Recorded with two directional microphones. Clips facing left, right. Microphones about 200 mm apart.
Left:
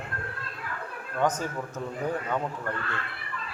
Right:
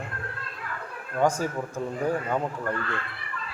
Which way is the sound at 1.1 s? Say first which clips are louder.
Right 3 dB; 10° right (ahead or behind).